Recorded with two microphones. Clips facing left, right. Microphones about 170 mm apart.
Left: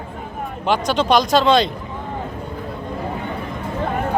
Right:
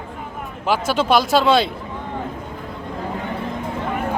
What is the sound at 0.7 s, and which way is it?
Speech, 5° right (ahead or behind).